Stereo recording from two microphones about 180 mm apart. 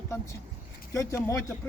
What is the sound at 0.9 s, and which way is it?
Speech, 15° left (ahead or behind).